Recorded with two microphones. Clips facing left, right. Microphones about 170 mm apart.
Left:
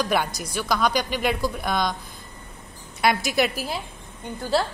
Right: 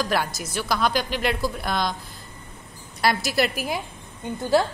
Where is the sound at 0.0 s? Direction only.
Centre (ahead or behind).